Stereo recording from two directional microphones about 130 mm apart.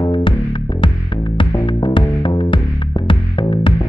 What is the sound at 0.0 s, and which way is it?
Music, 40° left (ahead or behind).